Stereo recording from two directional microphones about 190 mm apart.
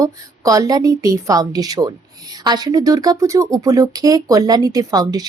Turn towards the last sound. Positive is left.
turn(degrees=-20)  # may be behind; listen again after turning